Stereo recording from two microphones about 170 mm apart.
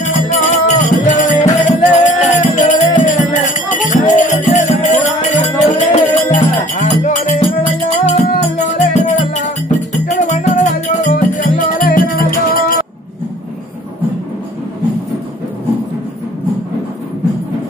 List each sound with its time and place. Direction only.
0.0 s music: 45° left (ahead or behind)